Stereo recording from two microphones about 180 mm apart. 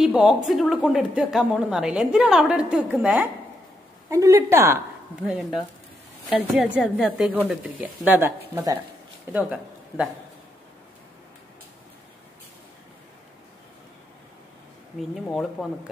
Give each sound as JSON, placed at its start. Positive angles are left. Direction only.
{"t": 0.0, "sound": "a woman's voice", "side_deg": -5}
{"t": 4.1, "sound": "a woman's voice", "side_deg": -20}
{"t": 15.0, "sound": "a woman's voice", "side_deg": 0}